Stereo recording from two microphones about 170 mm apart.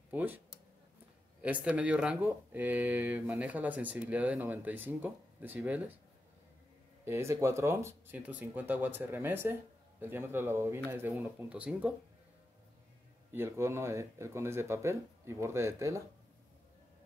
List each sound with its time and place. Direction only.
0.1 s speech: 10° right (ahead or behind)
1.4 s speech: 10° right (ahead or behind)
7.1 s speech: 15° right (ahead or behind)
13.3 s speech: 15° right (ahead or behind)